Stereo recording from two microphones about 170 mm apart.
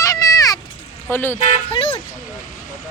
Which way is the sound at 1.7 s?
35° left (ahead or behind).